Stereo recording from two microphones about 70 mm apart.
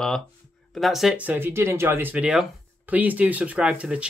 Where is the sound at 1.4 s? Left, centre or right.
Right.